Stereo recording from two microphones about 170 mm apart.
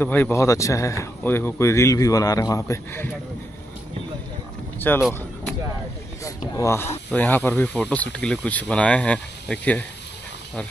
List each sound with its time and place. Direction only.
0.0 s speech: 10° left (ahead or behind)
4.7 s speech: 10° left (ahead or behind)
6.2 s speech: 20° left (ahead or behind)